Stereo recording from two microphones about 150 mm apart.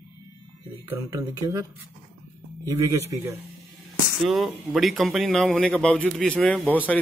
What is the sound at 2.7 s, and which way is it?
Speech, 20° right (ahead or behind).